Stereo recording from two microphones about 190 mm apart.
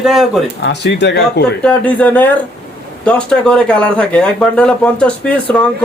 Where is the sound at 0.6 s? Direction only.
65° left (ahead or behind).